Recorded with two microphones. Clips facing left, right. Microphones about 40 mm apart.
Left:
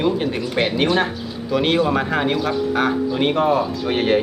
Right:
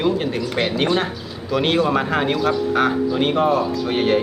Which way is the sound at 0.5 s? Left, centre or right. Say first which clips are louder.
Left 2 dB; centre.